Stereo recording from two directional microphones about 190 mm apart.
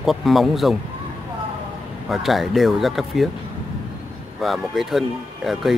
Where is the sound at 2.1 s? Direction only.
Centre (ahead or behind).